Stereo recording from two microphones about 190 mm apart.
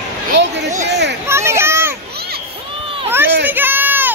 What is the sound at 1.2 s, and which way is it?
Children playing, 15° right (ahead or behind).